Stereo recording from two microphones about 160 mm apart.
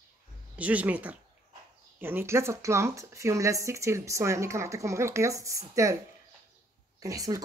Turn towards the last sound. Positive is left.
turn(degrees=-20)  # may be behind; listen again after turning